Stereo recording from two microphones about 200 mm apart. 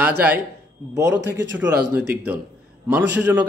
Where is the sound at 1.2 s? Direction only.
60° right (ahead or behind).